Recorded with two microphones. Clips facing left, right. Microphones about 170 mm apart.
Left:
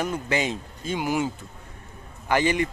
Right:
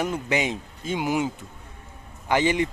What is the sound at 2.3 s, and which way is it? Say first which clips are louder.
Speech: right 1 dB; 15° right (ahead or behind).